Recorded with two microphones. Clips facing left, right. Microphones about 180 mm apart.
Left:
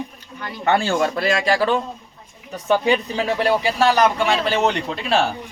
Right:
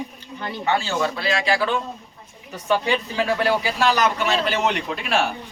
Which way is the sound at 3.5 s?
30° left (ahead or behind).